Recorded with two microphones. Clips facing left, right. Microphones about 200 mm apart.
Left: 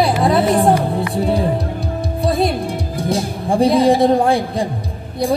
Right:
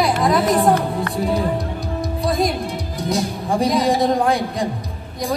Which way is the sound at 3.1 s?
30° left (ahead or behind).